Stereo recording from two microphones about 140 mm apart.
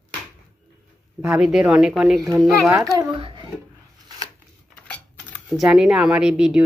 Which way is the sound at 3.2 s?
40° right (ahead or behind).